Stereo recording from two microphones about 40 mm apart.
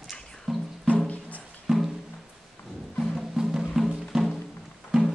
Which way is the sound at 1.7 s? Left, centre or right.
Centre.